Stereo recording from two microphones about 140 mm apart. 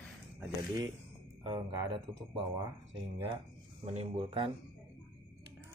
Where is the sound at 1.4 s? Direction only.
30° right (ahead or behind).